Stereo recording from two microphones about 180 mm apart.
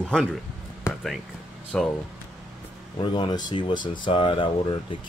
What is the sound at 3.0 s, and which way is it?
Speech, 25° left (ahead or behind).